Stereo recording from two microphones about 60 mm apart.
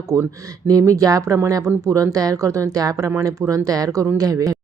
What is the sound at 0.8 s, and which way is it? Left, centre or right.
Speech, right.